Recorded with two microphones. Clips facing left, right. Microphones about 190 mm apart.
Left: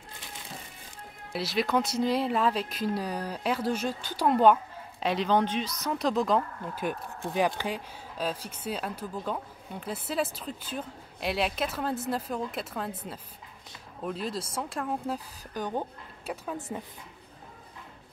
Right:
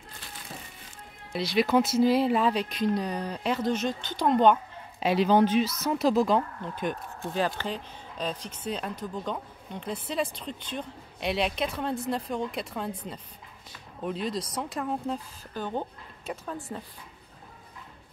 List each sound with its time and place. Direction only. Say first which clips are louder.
1.3 s speech: right 4 dB; 5° left (ahead or behind)
5.0 s speech: right 4 dB; 5° right (ahead or behind); by 16.8 s 20° left (ahead or behind)